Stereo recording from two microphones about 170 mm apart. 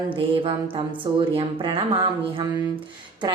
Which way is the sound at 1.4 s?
30° right (ahead or behind).